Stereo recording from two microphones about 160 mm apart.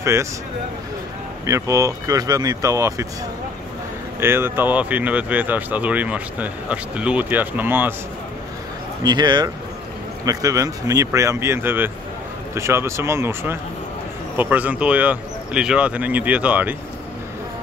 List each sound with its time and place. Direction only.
0.0 s speech: 15° right (ahead or behind)
1.4 s speech: 20° right (ahead or behind)
4.2 s speech: 15° right (ahead or behind)
9.0 s speech: 25° right (ahead or behind); by 16.7 s 10° right (ahead or behind)